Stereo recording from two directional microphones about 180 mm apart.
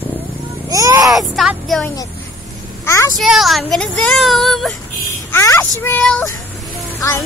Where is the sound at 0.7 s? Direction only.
20° right (ahead or behind).